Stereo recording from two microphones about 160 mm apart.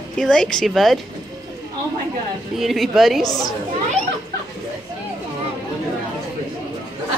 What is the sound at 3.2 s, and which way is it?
Speech, 25° left (ahead or behind).